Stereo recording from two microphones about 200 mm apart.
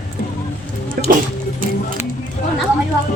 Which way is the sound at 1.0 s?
45° right (ahead or behind).